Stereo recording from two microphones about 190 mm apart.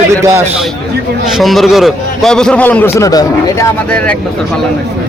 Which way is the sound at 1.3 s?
Centre (ahead or behind).